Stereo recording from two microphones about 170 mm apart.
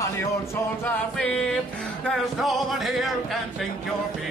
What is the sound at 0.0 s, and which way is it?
Music, 15° left (ahead or behind).